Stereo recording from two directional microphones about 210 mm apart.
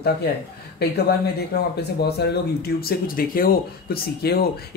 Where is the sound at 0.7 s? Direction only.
50° left (ahead or behind).